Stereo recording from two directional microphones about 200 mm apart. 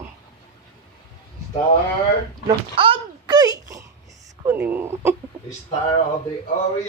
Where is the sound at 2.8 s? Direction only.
25° right (ahead or behind).